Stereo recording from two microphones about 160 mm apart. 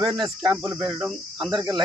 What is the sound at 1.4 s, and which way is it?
Cricket, 30° right (ahead or behind).